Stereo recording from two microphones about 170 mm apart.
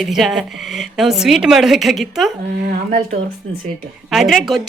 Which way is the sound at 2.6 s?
55° right (ahead or behind).